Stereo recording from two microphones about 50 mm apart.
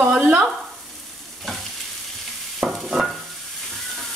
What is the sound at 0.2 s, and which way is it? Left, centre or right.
Frying, right.